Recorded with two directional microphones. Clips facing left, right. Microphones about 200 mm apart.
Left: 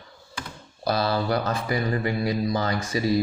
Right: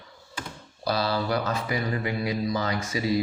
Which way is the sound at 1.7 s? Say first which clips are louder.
Left 5 dB; 35° left (ahead or behind).